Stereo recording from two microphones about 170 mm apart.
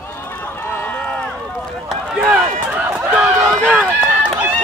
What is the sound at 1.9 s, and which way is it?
Run, 5° right (ahead or behind).